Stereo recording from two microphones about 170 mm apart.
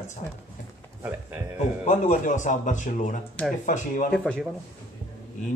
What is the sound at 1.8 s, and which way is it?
Speech, 45° left (ahead or behind).